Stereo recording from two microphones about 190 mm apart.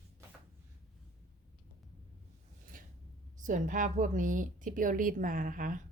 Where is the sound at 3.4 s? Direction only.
40° right (ahead or behind).